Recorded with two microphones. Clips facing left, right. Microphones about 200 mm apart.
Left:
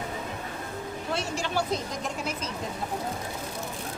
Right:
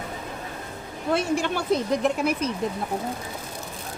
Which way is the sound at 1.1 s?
55° right (ahead or behind).